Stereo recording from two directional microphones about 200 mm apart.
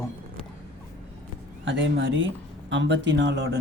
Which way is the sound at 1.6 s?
65° right (ahead or behind).